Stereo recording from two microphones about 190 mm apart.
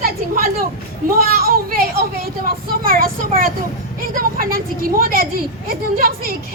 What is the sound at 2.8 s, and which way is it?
Speech, 50° right (ahead or behind).